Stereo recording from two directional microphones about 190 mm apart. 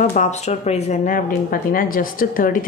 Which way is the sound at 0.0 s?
35° left (ahead or behind).